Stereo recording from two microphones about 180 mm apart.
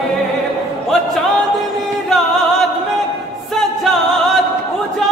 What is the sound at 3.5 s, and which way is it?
Music, centre (ahead or behind).